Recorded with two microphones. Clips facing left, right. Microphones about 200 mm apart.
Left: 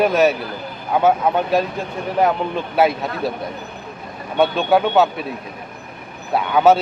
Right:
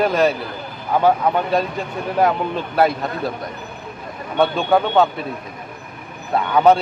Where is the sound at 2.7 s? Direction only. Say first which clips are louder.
Left 1 dB; 5° left (ahead or behind).